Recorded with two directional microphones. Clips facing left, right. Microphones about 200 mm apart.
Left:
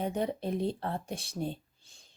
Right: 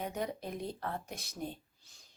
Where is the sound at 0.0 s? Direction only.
30° left (ahead or behind).